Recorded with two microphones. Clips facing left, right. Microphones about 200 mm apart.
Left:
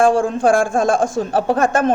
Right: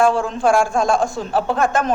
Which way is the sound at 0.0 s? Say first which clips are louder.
Left 2 dB; 50° left (ahead or behind).